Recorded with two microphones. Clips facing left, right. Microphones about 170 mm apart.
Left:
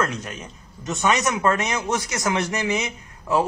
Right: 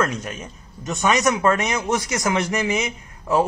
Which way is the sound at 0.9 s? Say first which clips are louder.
Right 2 dB; 15° right (ahead or behind).